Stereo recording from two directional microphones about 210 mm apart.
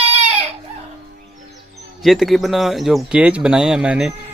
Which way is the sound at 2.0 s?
Centre (ahead or behind).